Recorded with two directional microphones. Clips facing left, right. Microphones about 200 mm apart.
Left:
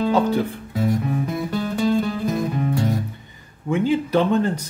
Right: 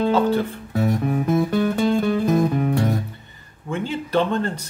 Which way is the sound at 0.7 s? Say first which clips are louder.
Right 1 dB; 60° right (ahead or behind).